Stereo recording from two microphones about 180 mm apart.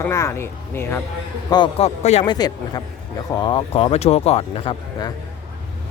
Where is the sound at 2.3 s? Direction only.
20° left (ahead or behind).